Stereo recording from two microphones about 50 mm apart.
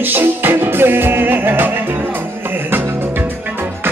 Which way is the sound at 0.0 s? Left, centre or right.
Right.